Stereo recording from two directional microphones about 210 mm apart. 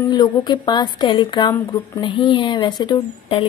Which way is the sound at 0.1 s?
20° left (ahead or behind).